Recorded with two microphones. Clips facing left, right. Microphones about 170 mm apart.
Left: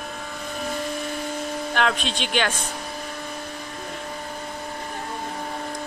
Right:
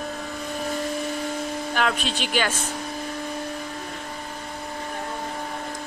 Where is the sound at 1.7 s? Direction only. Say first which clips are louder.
Left 1 dB; 5° right (ahead or behind).